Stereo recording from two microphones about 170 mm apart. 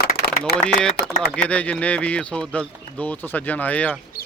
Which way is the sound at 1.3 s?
5° left (ahead or behind).